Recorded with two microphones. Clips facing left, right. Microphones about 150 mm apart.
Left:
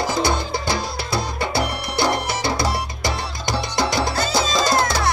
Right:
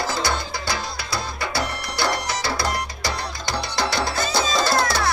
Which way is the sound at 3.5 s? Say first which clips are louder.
Left 3 dB; 5° left (ahead or behind).